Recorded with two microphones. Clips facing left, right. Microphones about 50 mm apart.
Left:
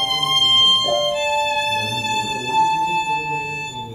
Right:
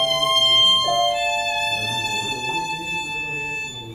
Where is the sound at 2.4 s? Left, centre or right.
Left.